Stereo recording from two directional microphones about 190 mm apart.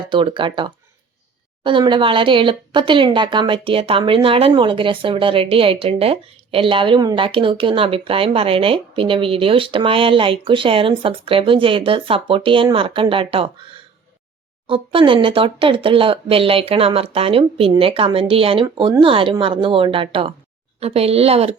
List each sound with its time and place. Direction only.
0.1 s speech: 25° right (ahead or behind)
14.7 s a woman's voice: 25° right (ahead or behind)